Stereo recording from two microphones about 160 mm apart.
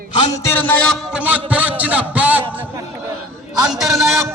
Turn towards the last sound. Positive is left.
turn(degrees=0)  # may be behind; listen again after turning